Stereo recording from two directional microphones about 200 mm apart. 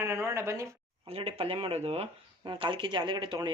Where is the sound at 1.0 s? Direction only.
30° right (ahead or behind).